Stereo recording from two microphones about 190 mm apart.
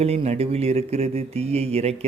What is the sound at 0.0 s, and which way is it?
A man's voice, 35° right (ahead or behind).